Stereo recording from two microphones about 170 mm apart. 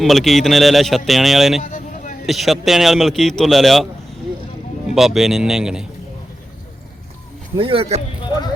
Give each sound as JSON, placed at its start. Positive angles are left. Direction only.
{"t": 0.0, "sound": "speech", "side_deg": 0}
{"t": 1.6, "sound": "a sound", "side_deg": 50}
{"t": 2.2, "sound": "speech", "side_deg": 0}
{"t": 4.9, "sound": "speech", "side_deg": 0}
{"t": 7.5, "sound": "a man's voice", "side_deg": -30}